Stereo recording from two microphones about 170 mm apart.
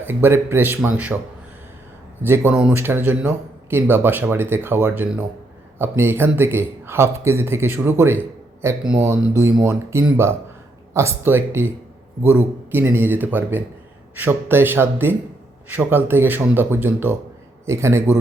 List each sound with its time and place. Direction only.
0.0 s speech: 10° right (ahead or behind)
2.2 s speech: 10° right (ahead or behind)
9.4 s speech: 15° right (ahead or behind)